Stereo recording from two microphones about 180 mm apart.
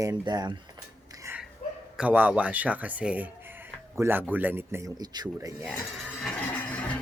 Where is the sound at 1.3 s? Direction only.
15° right (ahead or behind).